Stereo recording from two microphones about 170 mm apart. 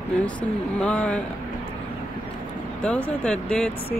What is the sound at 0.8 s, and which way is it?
Speech, 10° left (ahead or behind).